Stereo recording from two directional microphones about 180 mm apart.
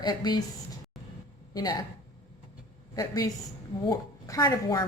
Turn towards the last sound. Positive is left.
turn(degrees=20)  # may be behind; listen again after turning